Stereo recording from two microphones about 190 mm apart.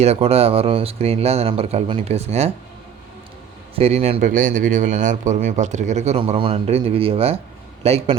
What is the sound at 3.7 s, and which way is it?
Speech, 30° right (ahead or behind).